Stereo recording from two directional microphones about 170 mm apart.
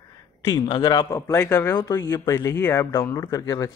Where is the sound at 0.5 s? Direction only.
25° left (ahead or behind).